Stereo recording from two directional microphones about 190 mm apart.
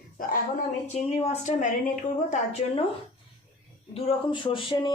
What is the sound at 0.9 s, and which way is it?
A woman's voice, 35° left (ahead or behind).